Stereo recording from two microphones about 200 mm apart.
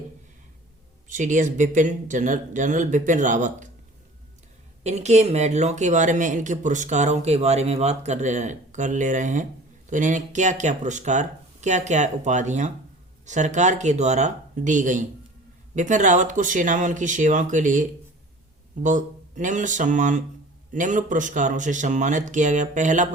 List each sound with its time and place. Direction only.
1.0 s speech: 40° right (ahead or behind)
4.8 s speech: 35° right (ahead or behind)